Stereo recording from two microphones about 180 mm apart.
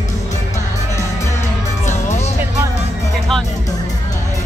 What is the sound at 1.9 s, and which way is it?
Music, 40° left (ahead or behind).